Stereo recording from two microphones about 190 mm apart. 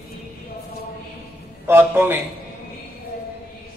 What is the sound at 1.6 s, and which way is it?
Speech, 10° right (ahead or behind).